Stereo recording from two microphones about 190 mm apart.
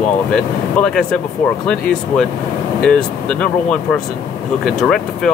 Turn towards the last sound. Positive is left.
turn(degrees=5)  # may be behind; listen again after turning